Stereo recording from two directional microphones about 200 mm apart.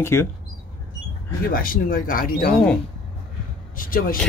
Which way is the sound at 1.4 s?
45° left (ahead or behind).